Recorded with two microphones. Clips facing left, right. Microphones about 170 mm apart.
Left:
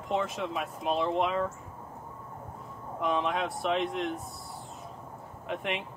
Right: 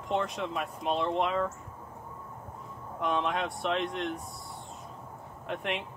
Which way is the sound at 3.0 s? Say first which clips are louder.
Left 1 dB; centre (ahead or behind).